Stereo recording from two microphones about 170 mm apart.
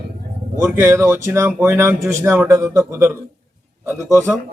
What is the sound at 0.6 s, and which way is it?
A man's voice, 15° right (ahead or behind).